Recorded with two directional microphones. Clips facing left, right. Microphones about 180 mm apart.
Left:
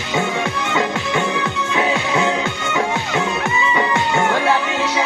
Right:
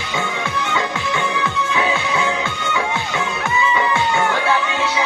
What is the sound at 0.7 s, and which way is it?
Music, 25° left (ahead or behind).